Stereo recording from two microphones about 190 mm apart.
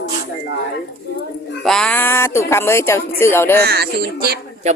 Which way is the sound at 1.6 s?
5° left (ahead or behind).